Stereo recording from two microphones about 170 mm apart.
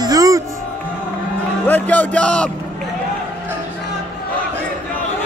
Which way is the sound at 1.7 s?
10° left (ahead or behind).